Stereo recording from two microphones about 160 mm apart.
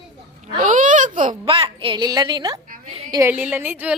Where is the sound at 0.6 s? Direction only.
50° right (ahead or behind).